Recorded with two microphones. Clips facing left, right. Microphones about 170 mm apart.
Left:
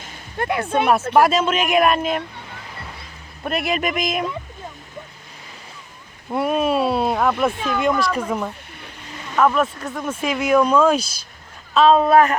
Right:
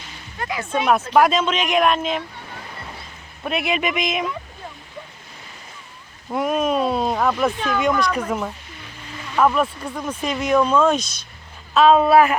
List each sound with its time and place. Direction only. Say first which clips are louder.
0.0 s a sound: left 5 dB; 50° left (ahead or behind)
1.2 s speech: left 1 dB; 5° left (ahead or behind)
3.4 s speech: even; centre (ahead or behind)
6.3 s speech: left 1 dB; centre (ahead or behind)
11.7 s speech: even; 5° right (ahead or behind)